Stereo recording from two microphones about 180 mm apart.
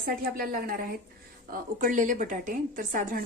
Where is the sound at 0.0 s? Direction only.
55° right (ahead or behind).